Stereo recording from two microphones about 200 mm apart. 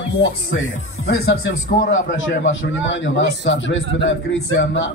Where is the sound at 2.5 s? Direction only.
65° left (ahead or behind).